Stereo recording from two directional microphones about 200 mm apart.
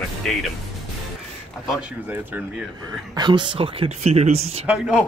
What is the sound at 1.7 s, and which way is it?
Speech, 5° right (ahead or behind).